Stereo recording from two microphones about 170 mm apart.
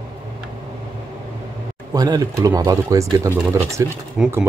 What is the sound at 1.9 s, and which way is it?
Speech, 20° right (ahead or behind).